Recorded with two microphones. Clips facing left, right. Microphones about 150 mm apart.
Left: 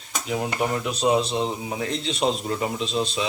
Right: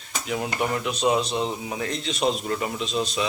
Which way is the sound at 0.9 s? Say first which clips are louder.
Left 2 dB; 30° left (ahead or behind).